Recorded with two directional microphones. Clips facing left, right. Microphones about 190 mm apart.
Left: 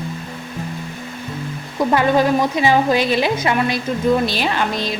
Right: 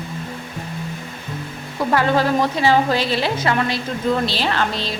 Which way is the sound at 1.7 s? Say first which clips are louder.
Left 2 dB; 15° left (ahead or behind).